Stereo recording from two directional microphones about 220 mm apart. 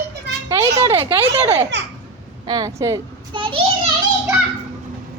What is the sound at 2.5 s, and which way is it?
A child's voice, 15° right (ahead or behind).